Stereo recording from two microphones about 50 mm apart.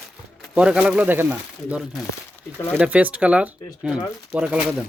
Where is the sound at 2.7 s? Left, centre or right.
Right.